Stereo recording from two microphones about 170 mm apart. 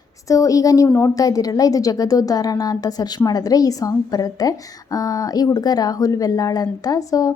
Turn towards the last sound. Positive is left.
turn(degrees=20)  # may be behind; listen again after turning